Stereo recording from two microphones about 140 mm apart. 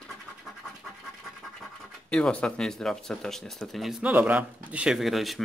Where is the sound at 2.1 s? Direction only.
5° left (ahead or behind).